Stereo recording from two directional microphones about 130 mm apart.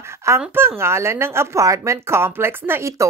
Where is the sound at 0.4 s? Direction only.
15° right (ahead or behind).